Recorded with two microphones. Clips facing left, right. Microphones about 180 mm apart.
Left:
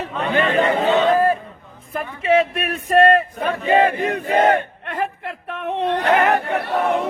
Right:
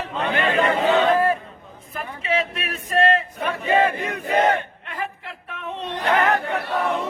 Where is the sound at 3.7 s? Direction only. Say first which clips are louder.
Left 4 dB; 30° left (ahead or behind).